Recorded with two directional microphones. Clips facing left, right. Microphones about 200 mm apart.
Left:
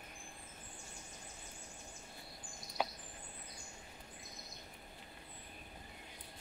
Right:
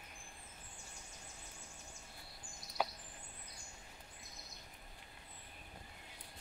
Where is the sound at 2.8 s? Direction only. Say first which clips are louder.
Even; 5° right (ahead or behind).